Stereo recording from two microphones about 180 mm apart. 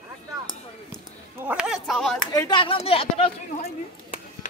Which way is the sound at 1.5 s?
5° right (ahead or behind).